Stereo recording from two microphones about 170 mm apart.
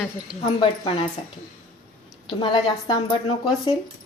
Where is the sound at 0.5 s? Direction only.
30° left (ahead or behind).